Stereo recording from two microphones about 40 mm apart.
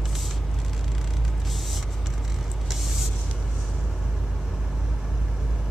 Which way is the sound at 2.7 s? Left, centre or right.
Centre.